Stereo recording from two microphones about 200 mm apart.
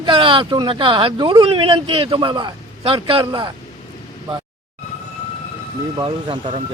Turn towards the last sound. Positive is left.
turn(degrees=-25)  # may be behind; listen again after turning